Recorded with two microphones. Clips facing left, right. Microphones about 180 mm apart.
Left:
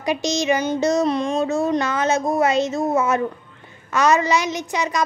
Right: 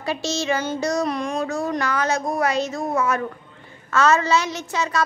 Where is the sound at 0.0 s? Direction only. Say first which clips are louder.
Left 4 dB; 15° left (ahead or behind).